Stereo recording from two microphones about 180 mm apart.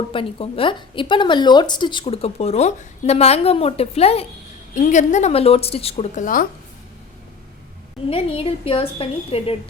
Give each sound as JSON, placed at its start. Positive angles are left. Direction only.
{"t": 0.1, "sound": "speech", "side_deg": 30}
{"t": 8.1, "sound": "speech", "side_deg": 30}